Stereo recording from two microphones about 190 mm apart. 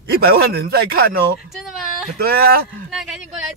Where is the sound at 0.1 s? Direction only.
55° right (ahead or behind).